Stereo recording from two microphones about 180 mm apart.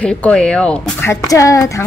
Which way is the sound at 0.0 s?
5° left (ahead or behind).